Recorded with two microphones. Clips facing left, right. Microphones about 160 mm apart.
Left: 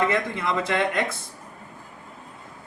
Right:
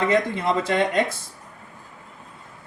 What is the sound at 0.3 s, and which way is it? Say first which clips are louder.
Speech: right 3 dB; 25° right (ahead or behind).